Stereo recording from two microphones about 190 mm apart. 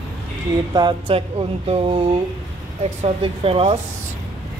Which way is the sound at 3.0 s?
30° right (ahead or behind).